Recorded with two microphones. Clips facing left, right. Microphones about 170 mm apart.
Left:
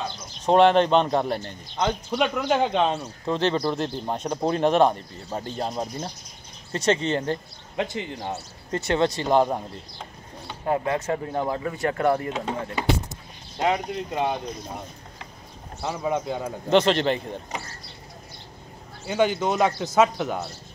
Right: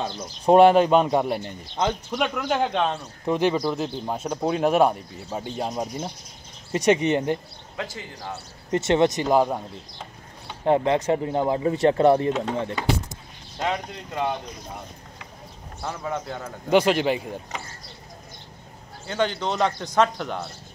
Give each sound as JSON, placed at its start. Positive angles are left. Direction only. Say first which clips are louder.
{"t": 0.5, "sound": "speech", "louder": "right 3 dB", "side_deg": -10}
{"t": 2.0, "sound": "speech", "louder": "left 2 dB", "side_deg": 5}
{"t": 3.3, "sound": "speech", "louder": "right 2 dB", "side_deg": -15}
{"t": 7.7, "sound": "speech", "louder": "left 6 dB", "side_deg": 25}
{"t": 8.7, "sound": "speech", "louder": "right 3 dB", "side_deg": -20}
{"t": 9.3, "sound": "speech", "louder": "even", "side_deg": -5}
{"t": 10.6, "sound": "speech", "louder": "right 4 dB", "side_deg": -25}
{"t": 12.3, "sound": "speech", "louder": "right 4 dB", "side_deg": 10}
{"t": 13.6, "sound": "speech", "louder": "left 4 dB", "side_deg": 15}
{"t": 15.8, "sound": "speech", "louder": "left 4 dB", "side_deg": 15}
{"t": 16.7, "sound": "speech", "louder": "even", "side_deg": -10}
{"t": 19.0, "sound": "speech", "louder": "left 3 dB", "side_deg": 10}